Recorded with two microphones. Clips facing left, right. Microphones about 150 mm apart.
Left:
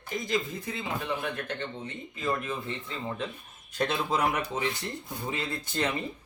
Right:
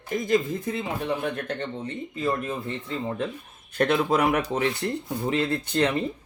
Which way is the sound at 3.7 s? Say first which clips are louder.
Right 7 dB; 60° right (ahead or behind).